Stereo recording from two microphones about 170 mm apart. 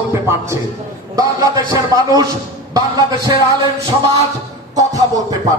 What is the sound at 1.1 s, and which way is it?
A man's voice, 20° right (ahead or behind).